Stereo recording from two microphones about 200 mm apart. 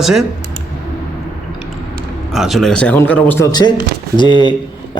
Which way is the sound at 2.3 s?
Centre (ahead or behind).